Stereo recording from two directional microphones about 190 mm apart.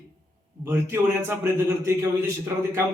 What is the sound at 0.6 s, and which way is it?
A man's voice, 10° right (ahead or behind).